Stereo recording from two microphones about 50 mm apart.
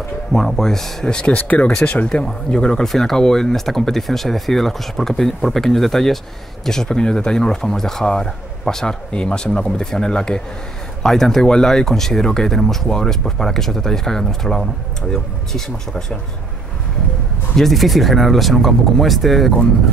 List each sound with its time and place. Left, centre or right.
0.3 s speech: centre
1.2 s speech: left
2.0 s speech: centre
17.6 s speech: centre